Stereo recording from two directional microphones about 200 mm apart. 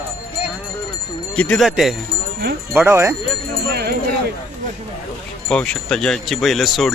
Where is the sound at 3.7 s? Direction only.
50° right (ahead or behind).